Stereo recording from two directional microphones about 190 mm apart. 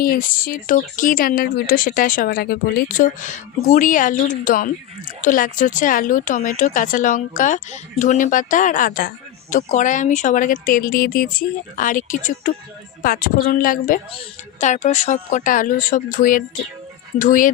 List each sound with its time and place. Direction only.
0.0 s a woman's voice: 50° left (ahead or behind)